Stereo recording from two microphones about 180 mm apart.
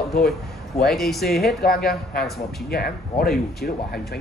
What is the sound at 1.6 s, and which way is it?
Speech, 60° left (ahead or behind).